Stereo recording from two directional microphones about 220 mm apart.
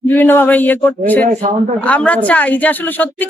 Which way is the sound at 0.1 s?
10° left (ahead or behind).